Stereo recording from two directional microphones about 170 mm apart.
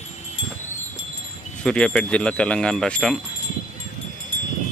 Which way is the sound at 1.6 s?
5° left (ahead or behind).